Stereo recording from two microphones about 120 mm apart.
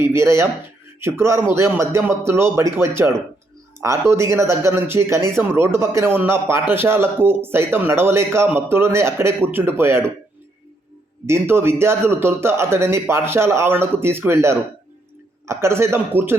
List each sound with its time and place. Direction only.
0.0 s speech: 20° right (ahead or behind)
11.3 s speech: 20° right (ahead or behind)